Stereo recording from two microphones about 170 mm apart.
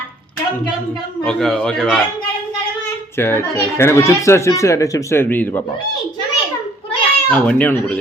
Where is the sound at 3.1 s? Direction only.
15° left (ahead or behind).